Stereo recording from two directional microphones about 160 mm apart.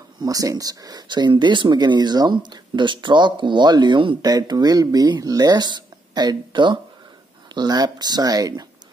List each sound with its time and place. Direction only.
0.2 s speech: 20° right (ahead or behind)